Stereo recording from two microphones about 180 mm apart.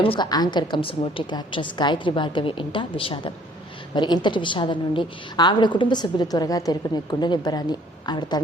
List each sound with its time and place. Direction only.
0.0 s a woman's voice: 25° left (ahead or behind)